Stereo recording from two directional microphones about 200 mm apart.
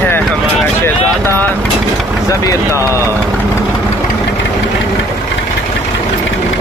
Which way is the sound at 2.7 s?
15° right (ahead or behind).